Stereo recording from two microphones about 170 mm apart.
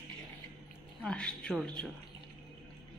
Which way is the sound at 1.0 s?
5° left (ahead or behind).